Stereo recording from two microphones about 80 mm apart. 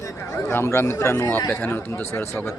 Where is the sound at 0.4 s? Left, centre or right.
Left.